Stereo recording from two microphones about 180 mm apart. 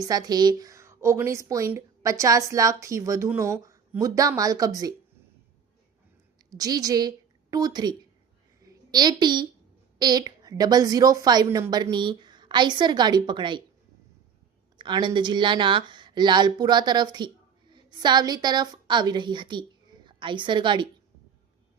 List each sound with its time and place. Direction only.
0.0 s a woman's voice: 20° right (ahead or behind)
6.5 s a woman's voice: 20° right (ahead or behind)
14.8 s a woman's voice: 25° right (ahead or behind)